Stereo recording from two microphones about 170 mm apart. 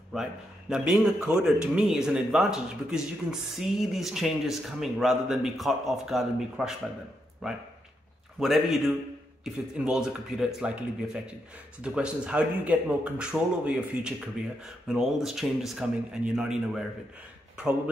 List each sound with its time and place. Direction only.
0.1 s a man's voice: 5° right (ahead or behind)
8.4 s a man's voice: centre (ahead or behind)
11.8 s a man's voice: 5° right (ahead or behind)